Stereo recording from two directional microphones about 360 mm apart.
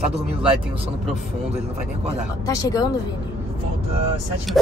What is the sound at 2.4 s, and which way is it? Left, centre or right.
Speech, centre.